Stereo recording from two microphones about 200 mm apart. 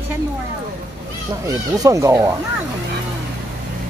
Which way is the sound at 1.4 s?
15° right (ahead or behind).